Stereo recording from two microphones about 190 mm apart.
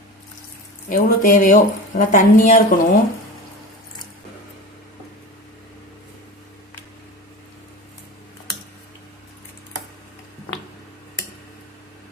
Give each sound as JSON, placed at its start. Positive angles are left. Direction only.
{"t": 0.9, "sound": "a woman's voice", "side_deg": 45}